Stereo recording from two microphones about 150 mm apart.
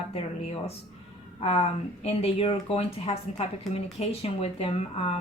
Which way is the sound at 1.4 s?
45° left (ahead or behind).